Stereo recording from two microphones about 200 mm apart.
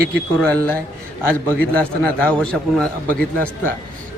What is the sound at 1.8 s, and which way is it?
A man's voice, 5° left (ahead or behind).